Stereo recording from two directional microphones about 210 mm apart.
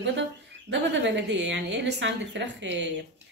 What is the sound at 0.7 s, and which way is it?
A woman's voice, 60° right (ahead or behind).